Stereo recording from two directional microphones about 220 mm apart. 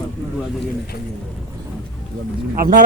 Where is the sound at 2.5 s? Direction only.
40° right (ahead or behind).